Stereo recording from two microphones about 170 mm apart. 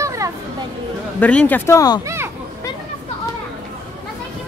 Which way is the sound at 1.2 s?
10° left (ahead or behind).